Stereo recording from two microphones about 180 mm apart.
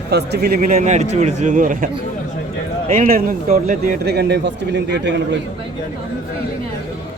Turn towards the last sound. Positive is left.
turn(degrees=-75)  # may be behind; listen again after turning